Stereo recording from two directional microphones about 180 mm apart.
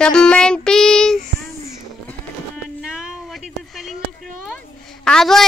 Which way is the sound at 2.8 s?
5° right (ahead or behind).